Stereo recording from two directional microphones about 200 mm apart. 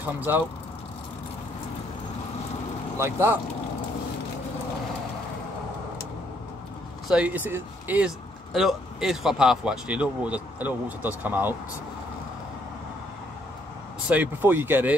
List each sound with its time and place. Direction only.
0.0 s speech: 10° right (ahead or behind)
3.0 s speech: 10° right (ahead or behind)
7.1 s speech: 5° right (ahead or behind)
14.0 s speech: 10° right (ahead or behind)